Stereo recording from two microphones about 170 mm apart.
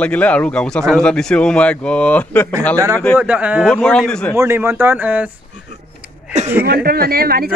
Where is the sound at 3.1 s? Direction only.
10° right (ahead or behind).